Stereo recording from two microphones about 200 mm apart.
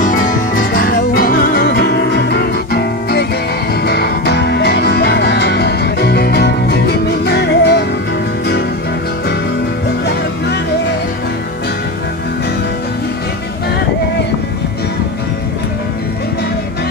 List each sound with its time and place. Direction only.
0.0 s music: 45° left (ahead or behind)